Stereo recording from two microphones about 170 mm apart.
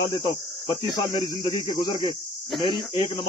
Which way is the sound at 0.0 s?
20° left (ahead or behind).